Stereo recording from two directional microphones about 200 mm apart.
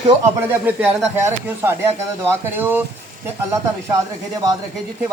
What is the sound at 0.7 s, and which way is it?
A man's voice, 10° right (ahead or behind).